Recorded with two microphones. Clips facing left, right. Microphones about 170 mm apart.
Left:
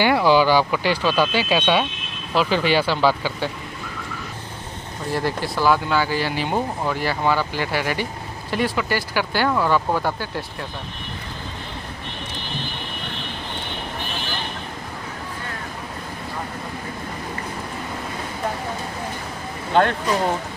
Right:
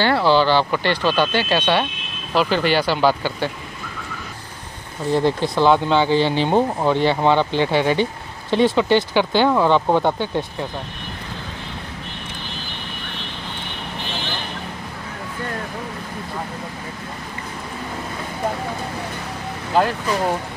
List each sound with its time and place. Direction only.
0.0 s speech: 10° left (ahead or behind)
5.1 s speech: 20° right (ahead or behind)
19.7 s speech: 5° right (ahead or behind)